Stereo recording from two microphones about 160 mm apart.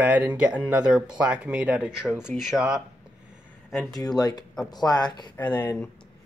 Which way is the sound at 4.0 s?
25° left (ahead or behind).